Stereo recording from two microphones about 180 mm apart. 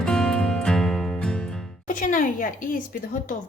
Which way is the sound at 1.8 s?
50° left (ahead or behind).